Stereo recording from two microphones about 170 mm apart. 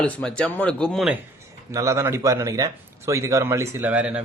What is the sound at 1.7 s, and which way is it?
A man's voice, 20° right (ahead or behind).